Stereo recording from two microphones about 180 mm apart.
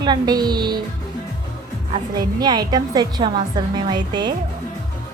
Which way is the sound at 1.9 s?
25° right (ahead or behind).